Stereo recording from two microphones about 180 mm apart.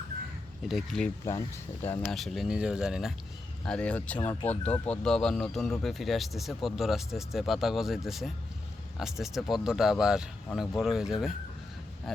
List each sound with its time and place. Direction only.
0.7 s speech: centre (ahead or behind)
1.2 s speech: 15° left (ahead or behind)
2.0 s speech: centre (ahead or behind)